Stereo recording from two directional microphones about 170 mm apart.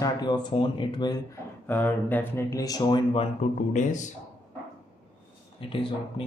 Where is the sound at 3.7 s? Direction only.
45° left (ahead or behind).